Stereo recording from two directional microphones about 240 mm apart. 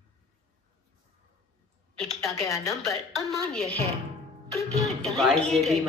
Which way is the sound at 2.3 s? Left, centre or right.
Centre.